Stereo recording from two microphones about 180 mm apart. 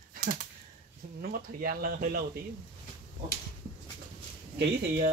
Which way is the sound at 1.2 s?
55° right (ahead or behind).